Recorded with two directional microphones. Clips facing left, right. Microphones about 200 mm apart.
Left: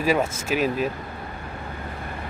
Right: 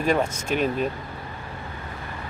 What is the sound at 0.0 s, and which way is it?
Speech, 5° left (ahead or behind).